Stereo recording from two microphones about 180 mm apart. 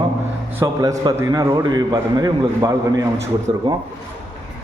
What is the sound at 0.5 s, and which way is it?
A man's voice, 15° right (ahead or behind).